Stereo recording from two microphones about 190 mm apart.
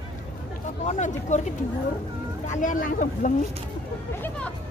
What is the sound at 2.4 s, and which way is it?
Speech, 45° left (ahead or behind).